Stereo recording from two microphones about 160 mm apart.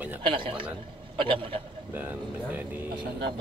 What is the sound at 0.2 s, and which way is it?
A man's voice, 30° right (ahead or behind).